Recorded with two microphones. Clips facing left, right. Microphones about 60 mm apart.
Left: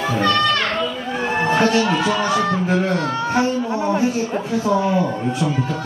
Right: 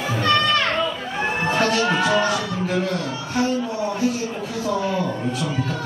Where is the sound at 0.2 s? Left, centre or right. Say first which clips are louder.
Even; right.